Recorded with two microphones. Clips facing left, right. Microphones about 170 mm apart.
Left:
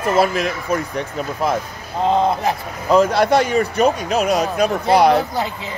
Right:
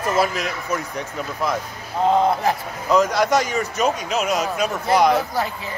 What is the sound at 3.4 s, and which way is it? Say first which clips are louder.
Speech: left 5 dB; 60° left (ahead or behind).